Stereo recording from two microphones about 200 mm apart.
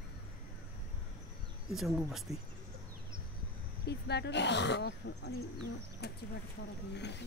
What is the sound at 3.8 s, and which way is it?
Speech, 55° left (ahead or behind).